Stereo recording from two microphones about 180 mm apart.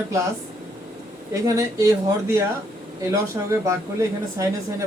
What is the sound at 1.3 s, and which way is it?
Speech, 15° right (ahead or behind).